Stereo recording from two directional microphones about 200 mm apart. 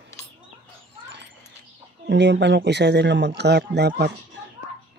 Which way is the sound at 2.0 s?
60° right (ahead or behind).